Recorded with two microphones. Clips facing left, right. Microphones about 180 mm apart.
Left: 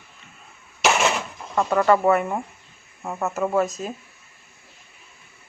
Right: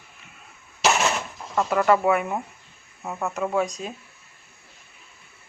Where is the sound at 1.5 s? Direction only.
5° right (ahead or behind).